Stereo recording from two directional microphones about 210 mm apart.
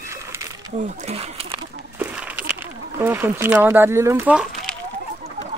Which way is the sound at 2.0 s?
5° right (ahead or behind).